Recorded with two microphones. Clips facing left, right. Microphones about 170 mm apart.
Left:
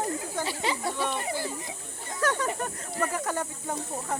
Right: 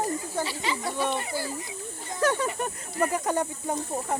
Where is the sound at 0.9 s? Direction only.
20° right (ahead or behind).